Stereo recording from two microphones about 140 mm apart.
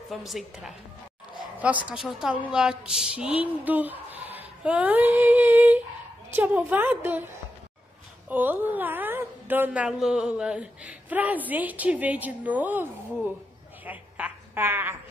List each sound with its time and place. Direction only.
0.1 s a woman's voice: centre (ahead or behind)
8.3 s speech: 15° right (ahead or behind)
13.8 s a sound: 10° right (ahead or behind)